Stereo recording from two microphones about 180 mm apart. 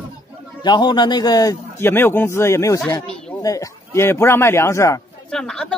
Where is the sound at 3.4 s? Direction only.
20° left (ahead or behind).